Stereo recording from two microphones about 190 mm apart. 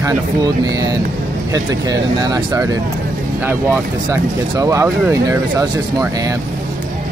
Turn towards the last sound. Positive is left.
turn(degrees=-20)  # may be behind; listen again after turning